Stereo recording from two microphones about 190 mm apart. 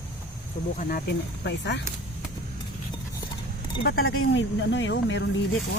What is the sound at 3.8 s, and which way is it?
Speech, 55° left (ahead or behind).